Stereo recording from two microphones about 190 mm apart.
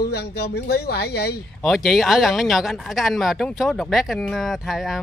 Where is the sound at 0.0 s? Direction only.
55° left (ahead or behind).